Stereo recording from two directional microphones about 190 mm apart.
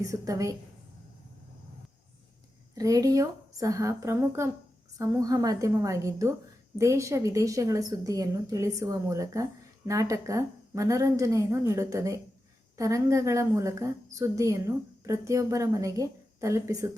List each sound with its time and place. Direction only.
0.0 s a woman's voice: 20° right (ahead or behind)
2.7 s a woman's voice: 20° right (ahead or behind)